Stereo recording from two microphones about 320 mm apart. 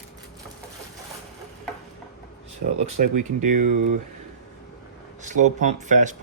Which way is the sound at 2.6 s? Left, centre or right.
Right.